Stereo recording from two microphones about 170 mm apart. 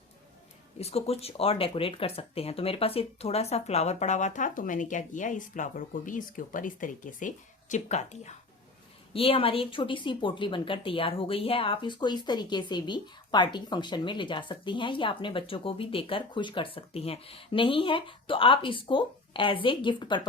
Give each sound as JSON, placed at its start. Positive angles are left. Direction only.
{"t": 0.8, "sound": "speech", "side_deg": 35}